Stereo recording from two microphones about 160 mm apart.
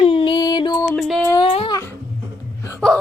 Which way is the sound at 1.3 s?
30° left (ahead or behind).